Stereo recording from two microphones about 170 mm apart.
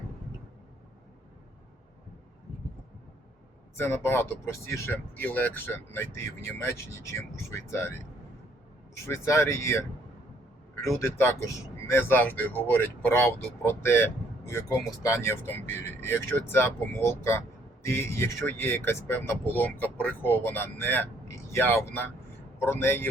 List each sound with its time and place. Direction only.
3.8 s speech: 15° left (ahead or behind)
9.0 s speech: 15° left (ahead or behind)